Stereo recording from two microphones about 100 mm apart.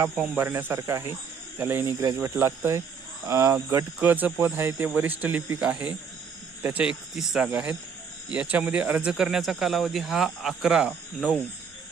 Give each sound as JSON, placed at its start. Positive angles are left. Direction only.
{"t": 0.3, "sound": "speech", "side_deg": -20}
{"t": 7.1, "sound": "speech", "side_deg": 0}